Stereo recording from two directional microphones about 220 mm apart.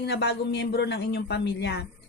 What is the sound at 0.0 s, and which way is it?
Speech, 50° left (ahead or behind).